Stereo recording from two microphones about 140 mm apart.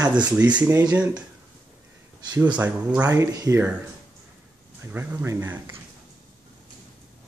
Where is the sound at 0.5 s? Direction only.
10° right (ahead or behind).